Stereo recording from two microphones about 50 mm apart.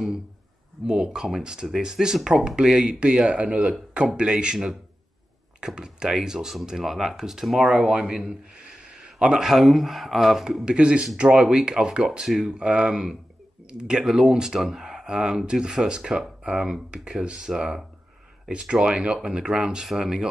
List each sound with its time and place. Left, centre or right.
0.8 s speech: centre
5.8 s speech: centre
10.6 s speech: centre
18.5 s speech: centre